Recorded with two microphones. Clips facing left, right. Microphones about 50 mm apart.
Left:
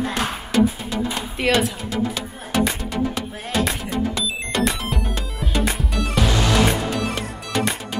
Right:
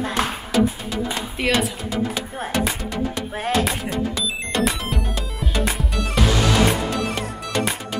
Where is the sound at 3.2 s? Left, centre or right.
Right.